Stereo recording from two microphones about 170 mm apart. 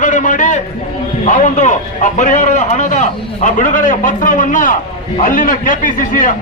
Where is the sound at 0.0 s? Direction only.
50° left (ahead or behind).